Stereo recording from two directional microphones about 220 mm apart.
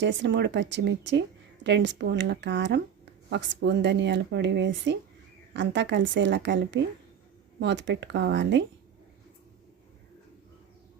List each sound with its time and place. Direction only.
0.0 s speech: 55° right (ahead or behind)